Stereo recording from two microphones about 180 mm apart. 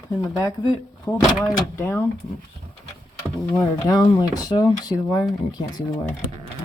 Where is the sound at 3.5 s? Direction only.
20° left (ahead or behind).